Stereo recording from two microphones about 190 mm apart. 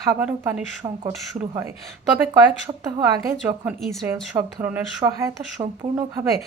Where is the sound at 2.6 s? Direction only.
15° right (ahead or behind).